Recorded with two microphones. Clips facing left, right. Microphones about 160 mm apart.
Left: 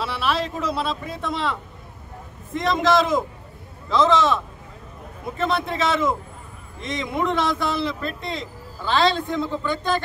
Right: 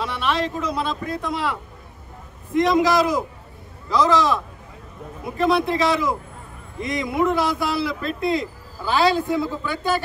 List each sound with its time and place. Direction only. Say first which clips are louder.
0.0 s speech: right 1 dB; 5° left (ahead or behind)